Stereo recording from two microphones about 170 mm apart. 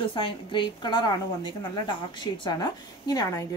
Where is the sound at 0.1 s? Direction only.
30° left (ahead or behind).